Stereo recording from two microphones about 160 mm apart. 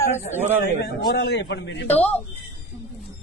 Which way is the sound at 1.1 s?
90° left.